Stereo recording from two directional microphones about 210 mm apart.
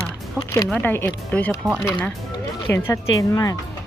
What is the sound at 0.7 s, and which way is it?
Speech, 10° left (ahead or behind).